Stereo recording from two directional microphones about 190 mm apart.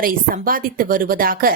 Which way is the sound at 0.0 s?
50° right (ahead or behind).